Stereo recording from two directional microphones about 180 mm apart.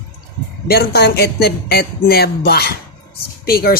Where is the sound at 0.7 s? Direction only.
65° left (ahead or behind).